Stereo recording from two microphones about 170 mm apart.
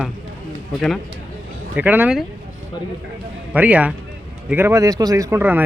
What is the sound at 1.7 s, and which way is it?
Speech, 10° right (ahead or behind).